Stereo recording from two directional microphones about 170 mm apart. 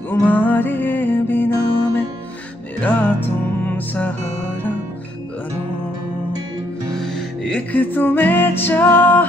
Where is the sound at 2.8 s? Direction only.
10° left (ahead or behind).